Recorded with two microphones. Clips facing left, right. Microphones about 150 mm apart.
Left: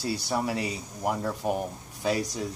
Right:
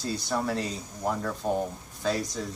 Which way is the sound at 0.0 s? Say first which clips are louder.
Left 1 dB; 10° left (ahead or behind).